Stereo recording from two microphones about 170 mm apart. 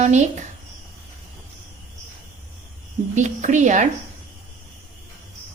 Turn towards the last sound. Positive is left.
turn(degrees=-45)  # may be behind; listen again after turning